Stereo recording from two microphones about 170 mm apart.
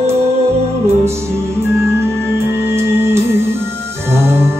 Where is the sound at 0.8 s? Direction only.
15° right (ahead or behind).